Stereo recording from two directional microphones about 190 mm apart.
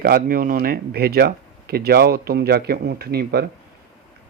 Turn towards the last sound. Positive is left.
turn(degrees=-55)  # may be behind; listen again after turning